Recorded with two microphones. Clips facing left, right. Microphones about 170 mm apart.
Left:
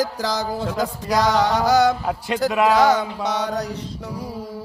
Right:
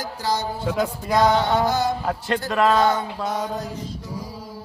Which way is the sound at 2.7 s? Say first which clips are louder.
Left 3 dB; 90° left.